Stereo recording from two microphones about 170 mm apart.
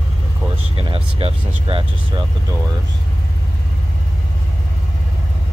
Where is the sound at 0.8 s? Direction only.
35° right (ahead or behind).